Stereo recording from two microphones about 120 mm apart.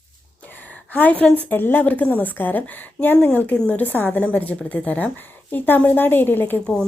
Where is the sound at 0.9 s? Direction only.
15° left (ahead or behind).